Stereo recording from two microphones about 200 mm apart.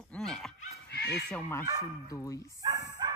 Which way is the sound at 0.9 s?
55° left (ahead or behind).